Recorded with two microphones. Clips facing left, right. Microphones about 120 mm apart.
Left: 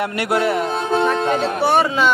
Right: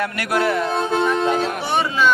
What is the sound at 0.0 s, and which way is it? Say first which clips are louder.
Speech: left 2 dB; 25° left (ahead or behind).